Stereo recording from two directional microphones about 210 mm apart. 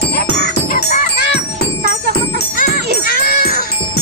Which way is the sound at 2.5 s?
45° left (ahead or behind).